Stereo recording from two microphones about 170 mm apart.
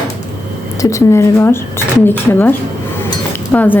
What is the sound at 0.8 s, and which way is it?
Speech, 20° left (ahead or behind).